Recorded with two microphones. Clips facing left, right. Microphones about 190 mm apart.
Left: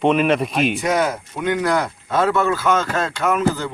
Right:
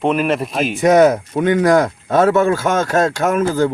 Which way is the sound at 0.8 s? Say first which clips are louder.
Right 9 dB; 50° right (ahead or behind).